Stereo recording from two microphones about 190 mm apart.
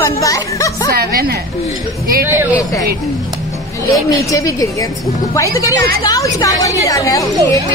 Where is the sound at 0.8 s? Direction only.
55° right (ahead or behind).